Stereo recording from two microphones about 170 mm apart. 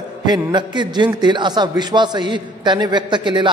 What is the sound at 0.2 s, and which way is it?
A man's voice, 25° right (ahead or behind).